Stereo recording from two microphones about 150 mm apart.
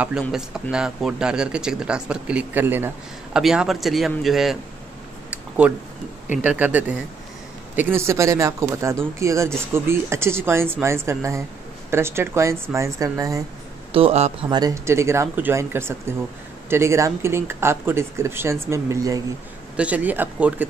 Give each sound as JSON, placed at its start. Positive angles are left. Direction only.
{"t": 0.3, "sound": "speech", "side_deg": -5}
{"t": 3.3, "sound": "speech", "side_deg": -5}
{"t": 6.4, "sound": "speech", "side_deg": -10}
{"t": 13.9, "sound": "speech", "side_deg": -40}
{"t": 14.5, "sound": "speech", "side_deg": -25}
{"t": 19.8, "sound": "speech", "side_deg": -10}